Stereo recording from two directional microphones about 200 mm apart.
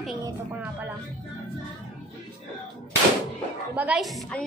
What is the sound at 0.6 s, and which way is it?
Speech, 10° right (ahead or behind).